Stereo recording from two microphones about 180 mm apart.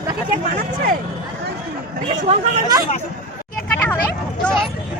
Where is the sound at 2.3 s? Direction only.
35° right (ahead or behind).